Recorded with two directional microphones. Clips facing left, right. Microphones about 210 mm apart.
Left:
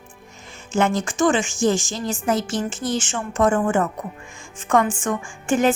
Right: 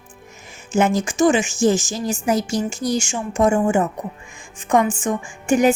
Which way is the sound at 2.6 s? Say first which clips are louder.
Right 3 dB; centre (ahead or behind).